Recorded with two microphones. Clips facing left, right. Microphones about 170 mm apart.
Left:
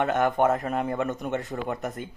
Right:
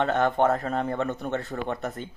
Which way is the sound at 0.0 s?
10° left (ahead or behind).